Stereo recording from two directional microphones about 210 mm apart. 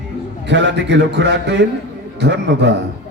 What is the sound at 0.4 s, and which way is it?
A man's voice, 55° right (ahead or behind).